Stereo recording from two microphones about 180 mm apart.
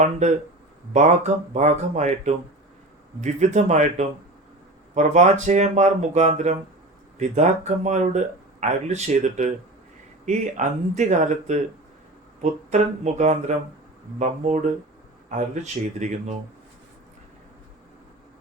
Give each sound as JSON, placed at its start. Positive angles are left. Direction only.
{"t": 0.0, "sound": "speech", "side_deg": -40}